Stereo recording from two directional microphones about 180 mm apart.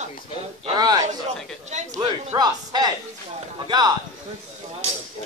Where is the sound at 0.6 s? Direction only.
25° right (ahead or behind).